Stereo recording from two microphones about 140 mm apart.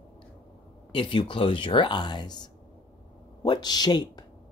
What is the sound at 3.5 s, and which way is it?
Speech, 30° left (ahead or behind).